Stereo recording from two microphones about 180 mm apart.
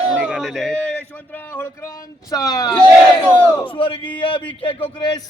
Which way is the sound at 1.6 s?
15° left (ahead or behind).